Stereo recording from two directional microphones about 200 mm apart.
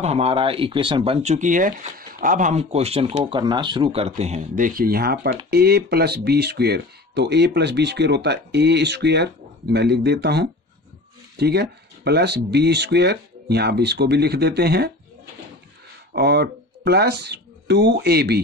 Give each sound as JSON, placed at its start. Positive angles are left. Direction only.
{"t": 0.0, "sound": "speech", "side_deg": -30}
{"t": 16.1, "sound": "speech", "side_deg": -55}